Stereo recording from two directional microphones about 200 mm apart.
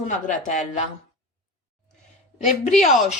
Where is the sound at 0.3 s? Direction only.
35° left (ahead or behind).